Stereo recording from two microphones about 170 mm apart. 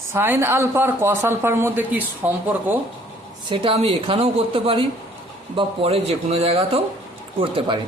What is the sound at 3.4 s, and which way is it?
A woman's voice, 30° right (ahead or behind).